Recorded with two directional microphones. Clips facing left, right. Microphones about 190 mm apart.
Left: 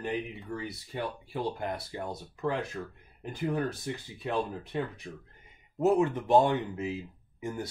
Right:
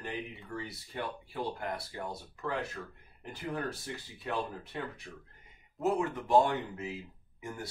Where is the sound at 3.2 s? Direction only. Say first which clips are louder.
Left 6 dB; 20° left (ahead or behind).